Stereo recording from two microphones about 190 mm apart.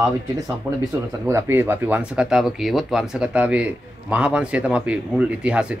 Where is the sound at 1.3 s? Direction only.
15° right (ahead or behind).